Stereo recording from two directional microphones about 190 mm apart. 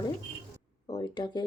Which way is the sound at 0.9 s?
20° left (ahead or behind).